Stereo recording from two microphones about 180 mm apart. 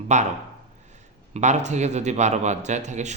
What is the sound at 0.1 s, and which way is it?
Speech, 40° right (ahead or behind).